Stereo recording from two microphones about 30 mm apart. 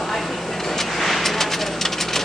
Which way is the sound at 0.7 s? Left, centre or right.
Centre.